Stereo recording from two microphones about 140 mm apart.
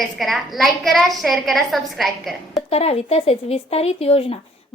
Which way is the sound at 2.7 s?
45° left (ahead or behind).